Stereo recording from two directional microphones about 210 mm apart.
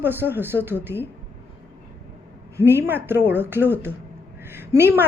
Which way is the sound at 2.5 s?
10° right (ahead or behind).